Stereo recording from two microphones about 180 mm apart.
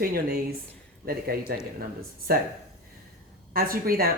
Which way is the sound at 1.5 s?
55° right (ahead or behind).